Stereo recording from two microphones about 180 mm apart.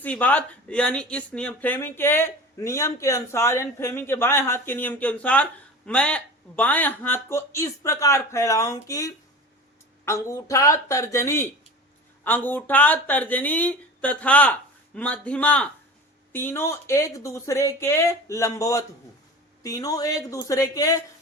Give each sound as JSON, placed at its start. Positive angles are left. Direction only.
{"t": 0.0, "sound": "speech", "side_deg": 10}